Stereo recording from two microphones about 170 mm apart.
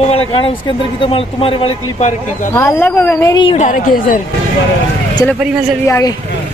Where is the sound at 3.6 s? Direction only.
50° left (ahead or behind).